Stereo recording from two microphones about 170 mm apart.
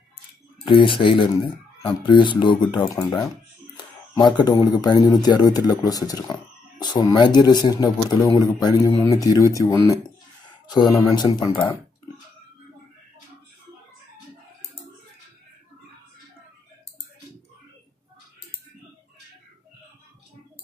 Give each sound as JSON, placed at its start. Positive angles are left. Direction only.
{"t": 0.7, "sound": "speech", "side_deg": 30}